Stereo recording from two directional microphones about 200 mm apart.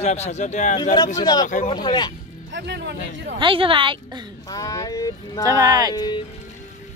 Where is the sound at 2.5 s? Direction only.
60° right (ahead or behind).